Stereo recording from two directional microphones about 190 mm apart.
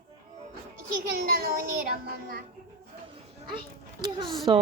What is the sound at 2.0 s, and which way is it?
Child singing, 55° right (ahead or behind).